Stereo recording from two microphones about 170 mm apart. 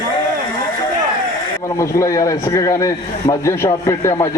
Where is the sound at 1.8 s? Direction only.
20° left (ahead or behind).